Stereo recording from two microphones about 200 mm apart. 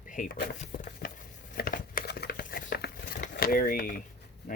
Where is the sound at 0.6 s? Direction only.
40° left (ahead or behind).